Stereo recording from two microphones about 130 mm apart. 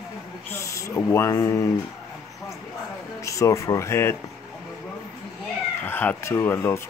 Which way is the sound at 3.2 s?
25° left (ahead or behind).